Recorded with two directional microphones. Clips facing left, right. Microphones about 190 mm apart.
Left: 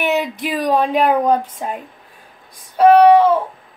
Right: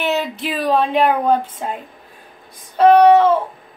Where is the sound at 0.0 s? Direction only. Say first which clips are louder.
Left 1 dB; 15° left (ahead or behind).